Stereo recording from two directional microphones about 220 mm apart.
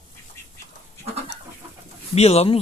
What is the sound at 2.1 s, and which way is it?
Speech, 30° left (ahead or behind).